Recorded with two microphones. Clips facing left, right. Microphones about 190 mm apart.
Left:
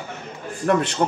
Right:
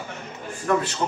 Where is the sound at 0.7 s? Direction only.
60° left (ahead or behind).